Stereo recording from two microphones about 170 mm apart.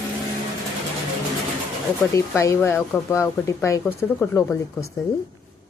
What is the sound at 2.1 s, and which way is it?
Speech, 20° left (ahead or behind).